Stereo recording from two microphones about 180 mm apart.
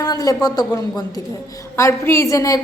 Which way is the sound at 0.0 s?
20° left (ahead or behind).